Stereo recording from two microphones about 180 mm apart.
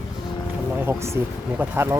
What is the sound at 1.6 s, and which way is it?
Speech, 15° right (ahead or behind).